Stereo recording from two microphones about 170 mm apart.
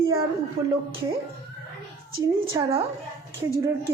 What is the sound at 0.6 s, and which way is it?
Speech, 35° right (ahead or behind).